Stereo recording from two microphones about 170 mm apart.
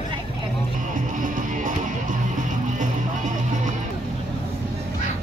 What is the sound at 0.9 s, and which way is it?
Music, 50° right (ahead or behind).